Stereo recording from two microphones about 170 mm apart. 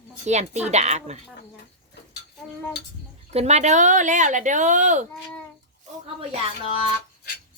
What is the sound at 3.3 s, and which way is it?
Speech, 40° right (ahead or behind).